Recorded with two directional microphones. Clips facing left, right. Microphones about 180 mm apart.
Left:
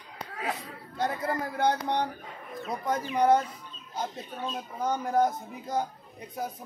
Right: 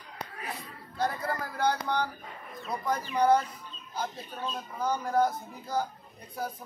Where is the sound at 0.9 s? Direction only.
20° left (ahead or behind).